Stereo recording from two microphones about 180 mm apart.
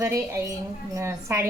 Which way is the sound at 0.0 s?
15° right (ahead or behind).